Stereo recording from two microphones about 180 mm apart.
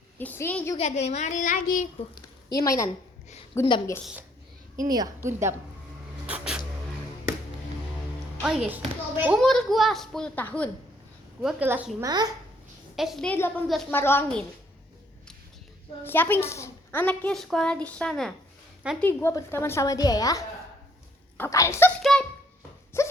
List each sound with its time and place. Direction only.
0.2 s a woman's voice: 10° left (ahead or behind)
0.8 s a child's voice: 40° left (ahead or behind)
2.1 s a woman's voice: 20° left (ahead or behind)
4.9 s a woman's voice: 20° right (ahead or behind)
6.2 s a sound: 5° right (ahead or behind)
8.4 s a child's voice: 10° right (ahead or behind)
9.4 s a child's voice: 5° left (ahead or behind)
11.4 s a woman's voice: 10° right (ahead or behind)
12.0 s a child's voice: 20° right (ahead or behind)
13.0 s a child's voice: centre (ahead or behind)
13.3 s a woman's voice: 10° left (ahead or behind)
16.0 s a woman's voice: 10° left (ahead or behind)
22.9 s dog: 15° left (ahead or behind)